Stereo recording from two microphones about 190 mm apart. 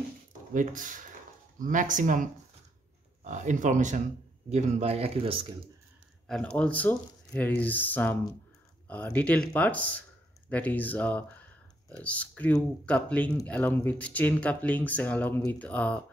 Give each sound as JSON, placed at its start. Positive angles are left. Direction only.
{"t": 0.5, "sound": "speech", "side_deg": -45}
{"t": 3.3, "sound": "speech", "side_deg": -40}
{"t": 6.2, "sound": "speech", "side_deg": 5}